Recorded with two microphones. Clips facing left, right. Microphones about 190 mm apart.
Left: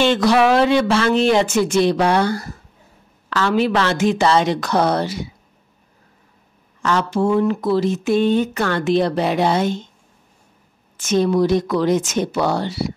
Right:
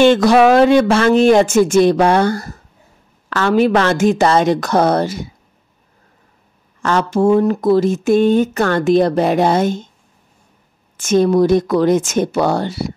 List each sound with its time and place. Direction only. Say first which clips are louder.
0.0 s speech: right 5 dB; 50° right (ahead or behind)
6.8 s speech: right 4 dB; 50° right (ahead or behind)
11.0 s speech: right 4 dB; 50° right (ahead or behind)